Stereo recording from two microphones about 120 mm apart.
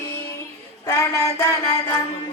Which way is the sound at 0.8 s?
25° left (ahead or behind).